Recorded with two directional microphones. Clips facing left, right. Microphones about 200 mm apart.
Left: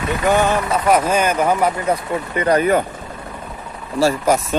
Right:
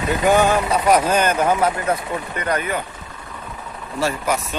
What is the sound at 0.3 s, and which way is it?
Speech, centre (ahead or behind).